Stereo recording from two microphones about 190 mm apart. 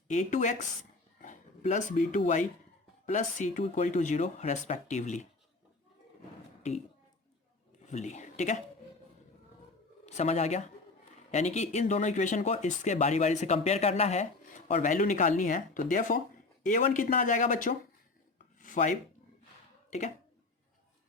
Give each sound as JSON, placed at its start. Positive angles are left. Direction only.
{"t": 0.1, "sound": "speech", "side_deg": 40}
{"t": 6.6, "sound": "speech", "side_deg": 35}
{"t": 7.9, "sound": "speech", "side_deg": 40}
{"t": 10.2, "sound": "speech", "side_deg": 35}
{"t": 18.6, "sound": "a sound", "side_deg": 40}
{"t": 19.9, "sound": "speech", "side_deg": 35}